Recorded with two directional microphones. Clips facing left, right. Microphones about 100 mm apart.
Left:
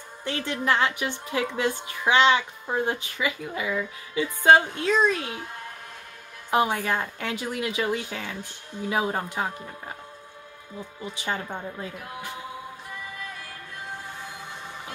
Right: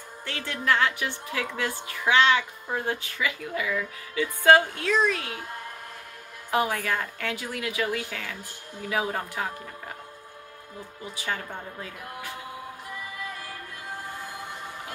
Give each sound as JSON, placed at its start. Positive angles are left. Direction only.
{"t": 0.2, "sound": "a woman's voice", "side_deg": 20}
{"t": 6.5, "sound": "a woman's voice", "side_deg": 20}
{"t": 13.4, "sound": "music", "side_deg": -5}